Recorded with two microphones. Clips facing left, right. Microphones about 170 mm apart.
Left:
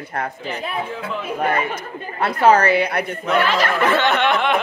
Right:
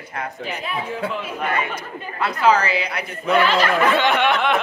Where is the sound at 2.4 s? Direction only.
50° left (ahead or behind).